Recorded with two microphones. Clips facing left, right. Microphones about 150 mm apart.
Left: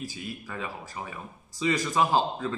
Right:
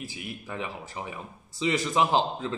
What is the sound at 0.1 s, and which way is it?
Speech, 20° right (ahead or behind).